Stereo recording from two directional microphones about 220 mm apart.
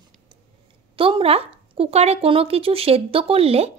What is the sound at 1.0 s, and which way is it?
Speech, 25° right (ahead or behind).